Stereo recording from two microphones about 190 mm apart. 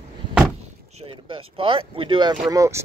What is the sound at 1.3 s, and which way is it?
Speech, 25° right (ahead or behind).